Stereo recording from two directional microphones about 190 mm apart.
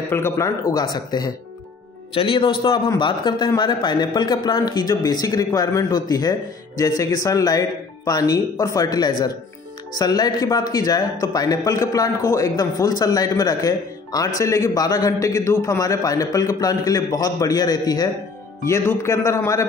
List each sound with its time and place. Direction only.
0.1 s speech: 15° left (ahead or behind)